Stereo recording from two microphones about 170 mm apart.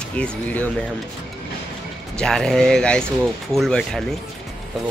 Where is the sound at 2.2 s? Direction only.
5° left (ahead or behind).